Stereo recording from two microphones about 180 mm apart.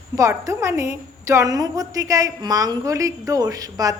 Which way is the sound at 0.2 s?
15° right (ahead or behind).